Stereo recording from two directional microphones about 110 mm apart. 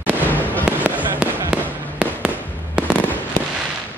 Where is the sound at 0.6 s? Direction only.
10° right (ahead or behind).